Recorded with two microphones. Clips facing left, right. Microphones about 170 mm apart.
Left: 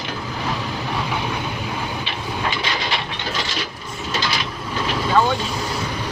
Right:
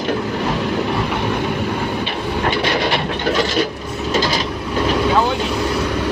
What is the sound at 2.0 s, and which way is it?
Train, 55° right (ahead or behind).